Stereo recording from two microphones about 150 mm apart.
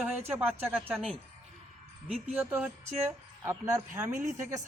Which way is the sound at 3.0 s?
20° right (ahead or behind).